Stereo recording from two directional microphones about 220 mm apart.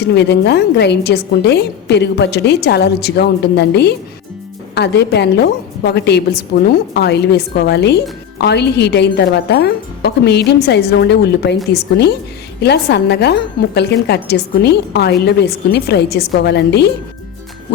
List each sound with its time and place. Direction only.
0.0 s a woman's voice: 50° left (ahead or behind)